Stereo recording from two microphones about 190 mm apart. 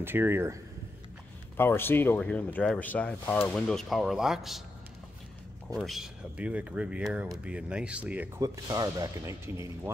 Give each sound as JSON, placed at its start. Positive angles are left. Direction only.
{"t": 0.0, "sound": "speech", "side_deg": -10}
{"t": 1.6, "sound": "speech", "side_deg": 10}
{"t": 5.8, "sound": "speech", "side_deg": 0}